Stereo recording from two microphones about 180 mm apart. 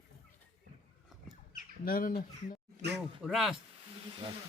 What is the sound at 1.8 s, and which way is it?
Speech, 55° left (ahead or behind).